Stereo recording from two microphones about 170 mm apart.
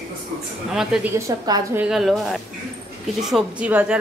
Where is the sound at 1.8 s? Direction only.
Centre (ahead or behind).